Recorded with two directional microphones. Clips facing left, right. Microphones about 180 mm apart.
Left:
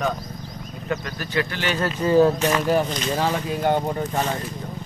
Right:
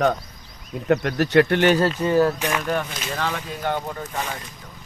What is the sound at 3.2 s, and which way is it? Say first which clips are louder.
Speech: left 3 dB; 35° left (ahead or behind).